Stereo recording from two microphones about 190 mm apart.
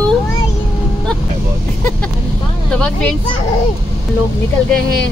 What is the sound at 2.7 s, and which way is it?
Speech, 5° left (ahead or behind).